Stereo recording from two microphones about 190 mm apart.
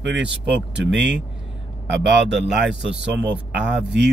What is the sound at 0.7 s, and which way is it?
Speech, 70° right (ahead or behind).